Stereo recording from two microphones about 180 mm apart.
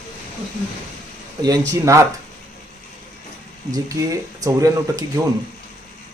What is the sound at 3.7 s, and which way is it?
Speech, 20° right (ahead or behind).